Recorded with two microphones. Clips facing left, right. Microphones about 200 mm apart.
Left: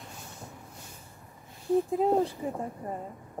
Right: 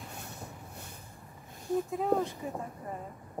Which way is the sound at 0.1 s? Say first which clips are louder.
Right 1 dB; 60° right (ahead or behind).